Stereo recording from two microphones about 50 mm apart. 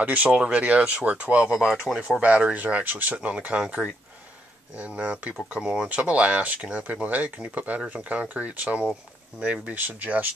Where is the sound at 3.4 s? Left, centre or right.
Centre.